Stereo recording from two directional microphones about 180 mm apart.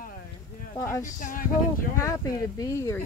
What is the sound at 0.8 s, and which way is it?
Speech, 15° left (ahead or behind).